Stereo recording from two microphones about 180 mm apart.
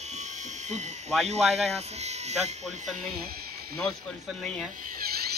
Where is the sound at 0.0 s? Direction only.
40° right (ahead or behind).